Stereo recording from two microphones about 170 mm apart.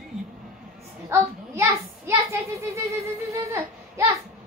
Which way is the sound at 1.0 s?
15° right (ahead or behind).